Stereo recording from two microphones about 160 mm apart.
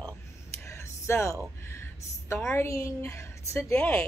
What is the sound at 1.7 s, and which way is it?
A woman's voice, 15° left (ahead or behind).